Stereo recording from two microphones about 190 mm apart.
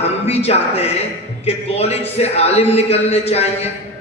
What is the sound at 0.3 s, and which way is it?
A man's voice, 35° left (ahead or behind).